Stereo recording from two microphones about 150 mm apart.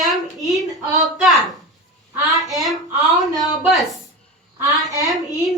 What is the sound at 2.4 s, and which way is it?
Speech, centre (ahead or behind).